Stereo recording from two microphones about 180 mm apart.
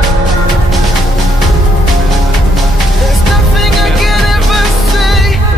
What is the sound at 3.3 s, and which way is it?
Music, centre (ahead or behind).